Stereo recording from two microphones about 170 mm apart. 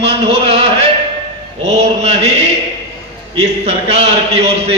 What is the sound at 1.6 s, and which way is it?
Speech, 40° right (ahead or behind).